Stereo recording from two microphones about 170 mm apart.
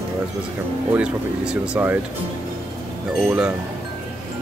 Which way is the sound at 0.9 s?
5° right (ahead or behind).